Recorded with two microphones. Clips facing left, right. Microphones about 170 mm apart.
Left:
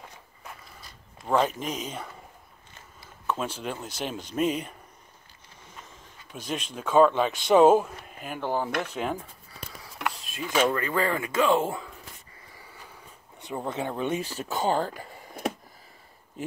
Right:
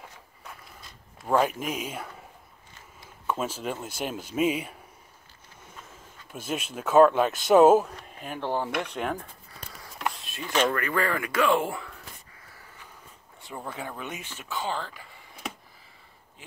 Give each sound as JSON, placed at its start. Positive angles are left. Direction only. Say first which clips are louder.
{"t": 0.4, "sound": "a sound", "louder": "left 1 dB", "side_deg": 0}
{"t": 3.3, "sound": "speech", "louder": "right 1 dB", "side_deg": -5}
{"t": 5.9, "sound": "speech", "louder": "right 1 dB", "side_deg": -5}
{"t": 10.4, "sound": "speech", "louder": "left 1 dB", "side_deg": 10}
{"t": 11.7, "sound": "gasp", "louder": "left 1 dB", "side_deg": 15}
{"t": 12.4, "sound": "a sound", "louder": "left 3 dB", "side_deg": 10}
{"t": 13.4, "sound": "speech", "louder": "left 6 dB", "side_deg": 20}